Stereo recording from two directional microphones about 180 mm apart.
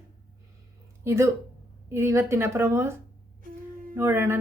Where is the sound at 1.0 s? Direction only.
15° right (ahead or behind).